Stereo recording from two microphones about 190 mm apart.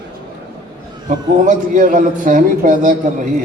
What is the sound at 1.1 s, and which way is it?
A man's voice, 45° right (ahead or behind).